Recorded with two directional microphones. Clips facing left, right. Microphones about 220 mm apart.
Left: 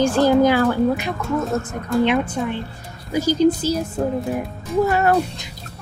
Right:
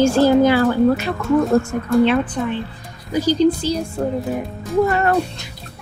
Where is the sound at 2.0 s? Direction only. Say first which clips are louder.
Right 2 dB; 15° left (ahead or behind).